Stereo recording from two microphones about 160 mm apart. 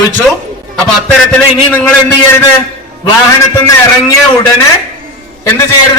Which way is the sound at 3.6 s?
20° left (ahead or behind).